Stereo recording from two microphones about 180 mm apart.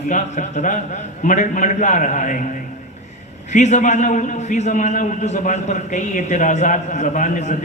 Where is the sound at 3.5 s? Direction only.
40° left (ahead or behind).